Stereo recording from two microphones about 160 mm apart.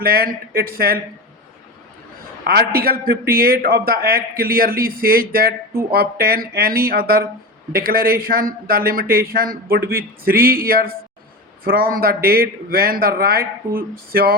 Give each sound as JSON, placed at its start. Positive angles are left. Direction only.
{"t": 0.0, "sound": "speech", "side_deg": -70}
{"t": 2.5, "sound": "speech", "side_deg": -75}